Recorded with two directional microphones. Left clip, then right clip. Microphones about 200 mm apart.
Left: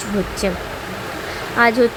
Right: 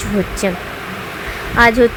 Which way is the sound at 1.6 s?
10° right (ahead or behind).